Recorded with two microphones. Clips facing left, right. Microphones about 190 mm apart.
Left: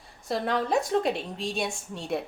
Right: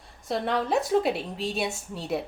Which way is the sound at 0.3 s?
Centre (ahead or behind).